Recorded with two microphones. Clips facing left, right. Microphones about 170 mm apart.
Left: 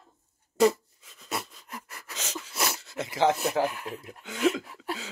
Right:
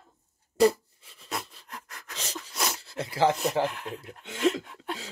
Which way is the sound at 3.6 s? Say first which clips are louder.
Left 1 dB; 5° left (ahead or behind).